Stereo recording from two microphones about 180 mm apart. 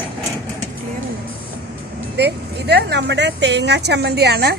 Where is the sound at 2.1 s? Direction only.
65° right (ahead or behind).